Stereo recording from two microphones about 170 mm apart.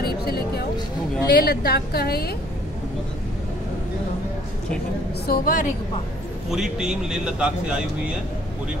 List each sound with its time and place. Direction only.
0.0 s a sound: 65° left (ahead or behind)
1.2 s a woman's voice: 65° left (ahead or behind)
5.2 s a woman's voice: 60° left (ahead or behind)
6.5 s a man's voice: 5° right (ahead or behind)